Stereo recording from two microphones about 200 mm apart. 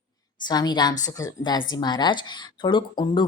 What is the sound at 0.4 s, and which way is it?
A woman's voice, 20° left (ahead or behind).